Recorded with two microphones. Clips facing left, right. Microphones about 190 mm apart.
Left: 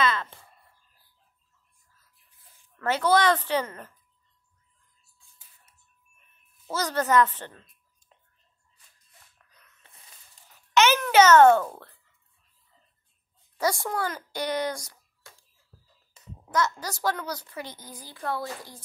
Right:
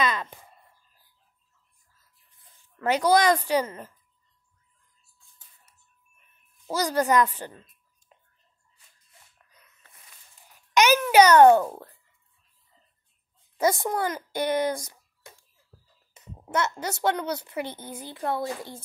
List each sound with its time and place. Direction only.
0.0 s a sound: 15° right (ahead or behind)
2.8 s a woman's voice: 15° right (ahead or behind)
6.7 s a woman's voice: 10° right (ahead or behind)
9.5 s music: 10° right (ahead or behind)
10.5 s babbling: 15° right (ahead or behind)
13.6 s a woman's voice: 20° right (ahead or behind)
14.3 s speech: 50° right (ahead or behind)
14.7 s a sound: 20° right (ahead or behind)
16.1 s a woman's voice: 20° right (ahead or behind)
17.6 s speech: 60° right (ahead or behind)
17.9 s a woman's voice: 25° right (ahead or behind)